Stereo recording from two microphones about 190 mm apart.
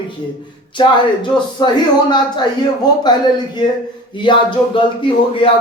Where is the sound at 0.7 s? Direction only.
25° left (ahead or behind).